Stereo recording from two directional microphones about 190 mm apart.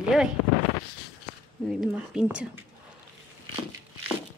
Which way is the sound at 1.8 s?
5° right (ahead or behind).